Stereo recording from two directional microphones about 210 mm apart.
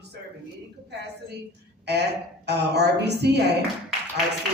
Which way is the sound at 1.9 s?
50° right (ahead or behind).